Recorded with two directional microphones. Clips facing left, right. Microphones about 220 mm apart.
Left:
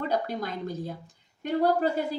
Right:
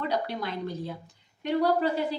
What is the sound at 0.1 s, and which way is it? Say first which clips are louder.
A woman's voice: left 1 dB; 45° left (ahead or behind).